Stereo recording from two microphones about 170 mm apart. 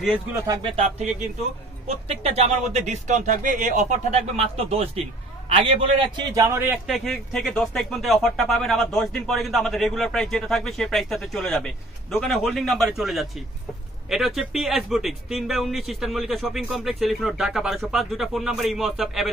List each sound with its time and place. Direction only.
0.3 s speech: 20° right (ahead or behind)
0.6 s speech: 35° right (ahead or behind)
2.0 s a man's voice: 35° right (ahead or behind); by 6.8 s 15° right (ahead or behind)
6.9 s speech: centre (ahead or behind)